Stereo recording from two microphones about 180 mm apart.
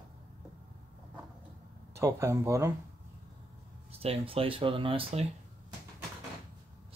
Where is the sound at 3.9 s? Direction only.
35° right (ahead or behind).